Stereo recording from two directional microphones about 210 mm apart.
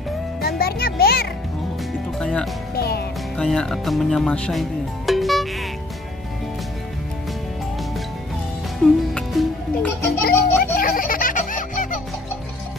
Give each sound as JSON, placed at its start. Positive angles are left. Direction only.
{"t": 0.4, "sound": "music", "side_deg": 45}
{"t": 2.1, "sound": "music", "side_deg": 5}
{"t": 2.7, "sound": "music", "side_deg": 45}
{"t": 3.3, "sound": "speech", "side_deg": 5}
{"t": 8.8, "sound": "music", "side_deg": 0}
{"t": 10.0, "sound": "music", "side_deg": 45}